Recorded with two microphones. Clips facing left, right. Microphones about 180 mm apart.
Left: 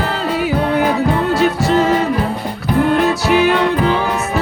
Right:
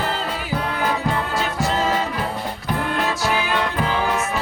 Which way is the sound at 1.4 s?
70° left (ahead or behind).